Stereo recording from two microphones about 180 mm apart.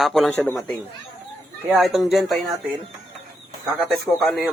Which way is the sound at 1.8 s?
Centre (ahead or behind).